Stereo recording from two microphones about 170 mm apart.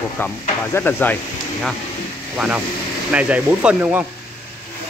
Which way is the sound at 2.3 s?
5° right (ahead or behind).